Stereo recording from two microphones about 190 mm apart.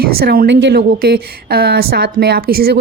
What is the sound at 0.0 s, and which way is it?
A woman's voice, 55° right (ahead or behind).